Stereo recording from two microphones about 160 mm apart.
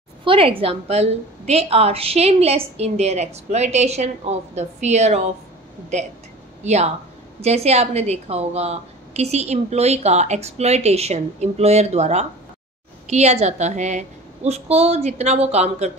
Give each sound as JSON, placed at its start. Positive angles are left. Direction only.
{"t": 0.2, "sound": "a woman's voice", "side_deg": -35}
{"t": 6.6, "sound": "a woman's voice", "side_deg": -45}